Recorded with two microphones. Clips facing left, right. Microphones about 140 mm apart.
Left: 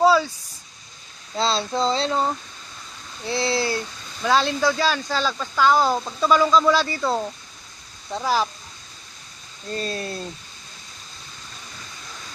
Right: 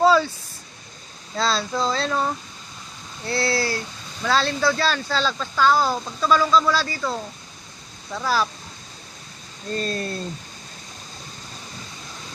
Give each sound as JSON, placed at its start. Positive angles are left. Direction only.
{"t": 0.0, "sound": "a sound", "side_deg": 10}
{"t": 1.4, "sound": "female singing", "side_deg": 25}
{"t": 4.2, "sound": "speech", "side_deg": 15}
{"t": 8.2, "sound": "speech", "side_deg": 15}
{"t": 9.7, "sound": "speech", "side_deg": 5}